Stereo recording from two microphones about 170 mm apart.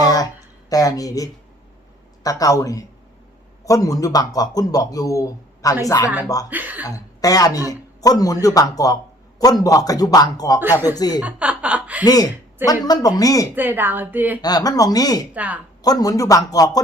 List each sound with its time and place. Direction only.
0.0 s a sound: 20° left (ahead or behind)
0.7 s a man's voice: 20° left (ahead or behind)
6.5 s a woman's voice: 10° right (ahead or behind)
6.8 s a man's voice: 20° left (ahead or behind)
10.6 s a woman's voice: 10° right (ahead or behind)
10.8 s a man's voice: 25° left (ahead or behind)
11.2 s chuckle: 5° right (ahead or behind)
12.0 s a man's voice: 20° left (ahead or behind)
13.6 s a woman's voice: 10° right (ahead or behind)
14.4 s a man's voice: 20° left (ahead or behind)
15.3 s a woman's voice: 10° right (ahead or behind)
15.8 s a man's voice: 20° left (ahead or behind)